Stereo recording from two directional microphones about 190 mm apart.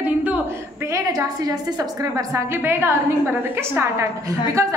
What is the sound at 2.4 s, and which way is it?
A woman's voice, 10° right (ahead or behind).